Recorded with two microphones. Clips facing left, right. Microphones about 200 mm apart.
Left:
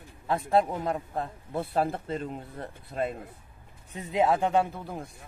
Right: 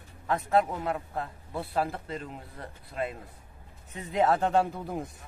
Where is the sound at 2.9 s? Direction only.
50° left (ahead or behind).